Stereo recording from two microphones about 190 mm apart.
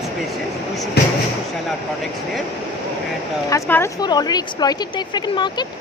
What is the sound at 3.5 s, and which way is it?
Speech, 15° left (ahead or behind).